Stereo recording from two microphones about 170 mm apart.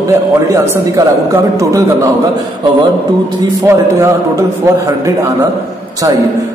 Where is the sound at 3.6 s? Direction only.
15° right (ahead or behind).